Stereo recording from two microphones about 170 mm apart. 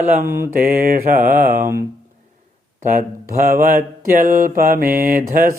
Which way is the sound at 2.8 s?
45° right (ahead or behind).